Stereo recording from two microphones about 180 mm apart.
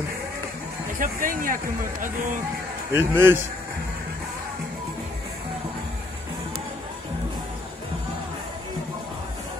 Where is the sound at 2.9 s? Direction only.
10° right (ahead or behind).